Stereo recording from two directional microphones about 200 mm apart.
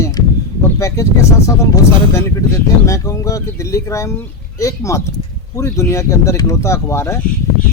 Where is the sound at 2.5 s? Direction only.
15° left (ahead or behind).